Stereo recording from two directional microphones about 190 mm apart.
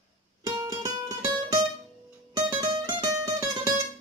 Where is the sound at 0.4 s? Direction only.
20° right (ahead or behind).